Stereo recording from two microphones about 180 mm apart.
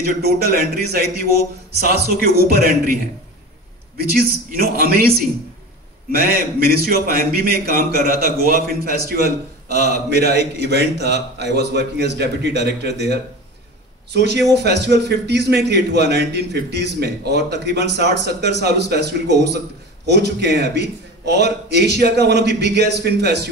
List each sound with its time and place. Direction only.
0.2 s a man's voice: 60° right (ahead or behind)
4.0 s a man's voice: 55° right (ahead or behind)
6.1 s a man's voice: 55° right (ahead or behind); by 13.0 s 70° right (ahead or behind)
14.1 s a man's voice: 70° right (ahead or behind)